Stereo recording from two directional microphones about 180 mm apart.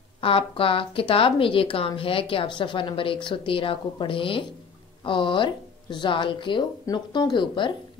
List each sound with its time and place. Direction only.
0.2 s speech: 30° left (ahead or behind)